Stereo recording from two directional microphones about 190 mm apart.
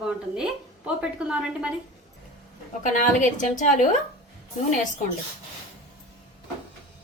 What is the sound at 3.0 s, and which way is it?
Speech, 40° left (ahead or behind).